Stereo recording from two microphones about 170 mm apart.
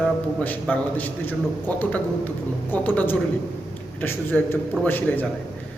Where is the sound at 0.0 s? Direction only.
10° left (ahead or behind).